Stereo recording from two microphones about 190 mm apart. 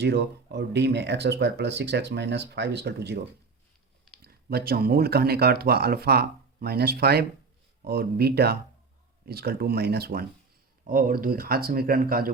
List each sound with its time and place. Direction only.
0.0 s speech: 60° right (ahead or behind)
4.2 s speech: 55° right (ahead or behind)